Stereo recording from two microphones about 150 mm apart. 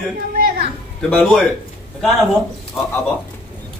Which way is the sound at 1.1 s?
5° left (ahead or behind).